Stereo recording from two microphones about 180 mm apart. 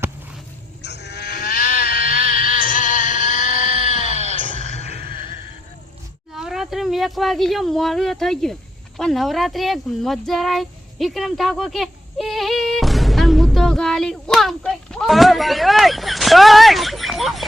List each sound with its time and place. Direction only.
0.8 s goat: 70° left (ahead or behind); by 4.3 s 40° left (ahead or behind)
4.6 s music: 40° left (ahead or behind)
6.3 s speech: centre (ahead or behind)
9.0 s a sound: centre (ahead or behind)